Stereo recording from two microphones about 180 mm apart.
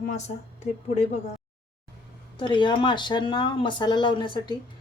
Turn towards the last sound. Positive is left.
turn(degrees=25)  # may be behind; listen again after turning